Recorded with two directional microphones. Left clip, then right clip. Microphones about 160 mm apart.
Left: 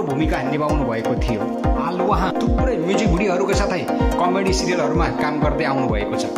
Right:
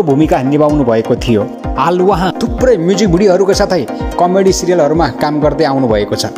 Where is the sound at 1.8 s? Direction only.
45° right (ahead or behind).